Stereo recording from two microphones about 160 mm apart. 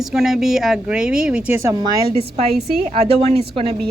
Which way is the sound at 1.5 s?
20° right (ahead or behind).